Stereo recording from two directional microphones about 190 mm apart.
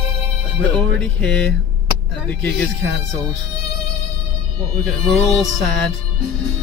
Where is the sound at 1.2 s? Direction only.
5° left (ahead or behind).